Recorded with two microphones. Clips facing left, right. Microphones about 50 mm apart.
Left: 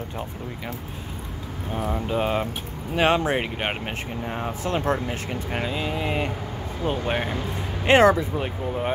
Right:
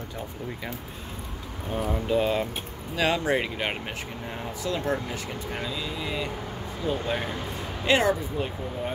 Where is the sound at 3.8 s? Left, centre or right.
Left.